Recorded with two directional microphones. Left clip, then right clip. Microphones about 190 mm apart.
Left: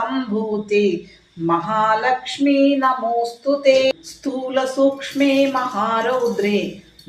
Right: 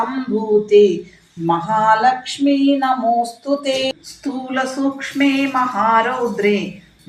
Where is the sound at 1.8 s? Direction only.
20° left (ahead or behind).